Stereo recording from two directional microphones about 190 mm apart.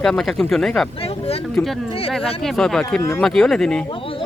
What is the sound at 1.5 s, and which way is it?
Speech, 5° left (ahead or behind).